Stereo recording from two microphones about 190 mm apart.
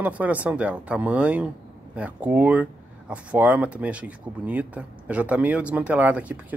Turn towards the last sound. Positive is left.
turn(degrees=-10)  # may be behind; listen again after turning